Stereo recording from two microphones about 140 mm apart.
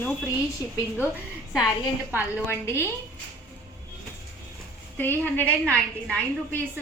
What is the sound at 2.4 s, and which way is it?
Speech, 20° left (ahead or behind).